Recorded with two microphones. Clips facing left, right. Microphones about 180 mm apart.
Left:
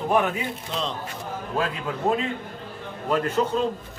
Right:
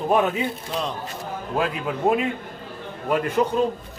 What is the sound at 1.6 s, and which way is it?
Speech, 15° right (ahead or behind).